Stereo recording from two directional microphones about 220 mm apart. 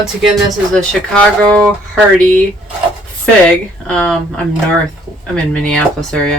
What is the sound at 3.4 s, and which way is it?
Speech, 5° left (ahead or behind).